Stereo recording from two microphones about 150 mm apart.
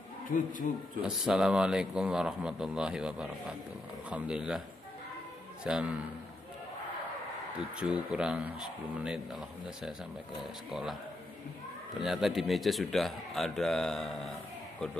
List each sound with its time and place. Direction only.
0.3 s speech: 65° left (ahead or behind)
1.0 s speech: 5° right (ahead or behind)
7.7 s speech: 5° right (ahead or behind)
12.0 s speech: centre (ahead or behind)